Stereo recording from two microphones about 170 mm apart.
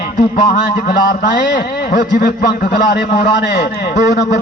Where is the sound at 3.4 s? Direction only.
70° left (ahead or behind).